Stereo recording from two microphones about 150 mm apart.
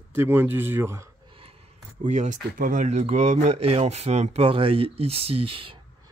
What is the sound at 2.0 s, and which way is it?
Speech, 55° right (ahead or behind).